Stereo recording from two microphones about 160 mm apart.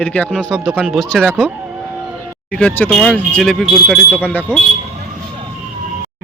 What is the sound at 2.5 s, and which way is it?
Speech, 5° left (ahead or behind).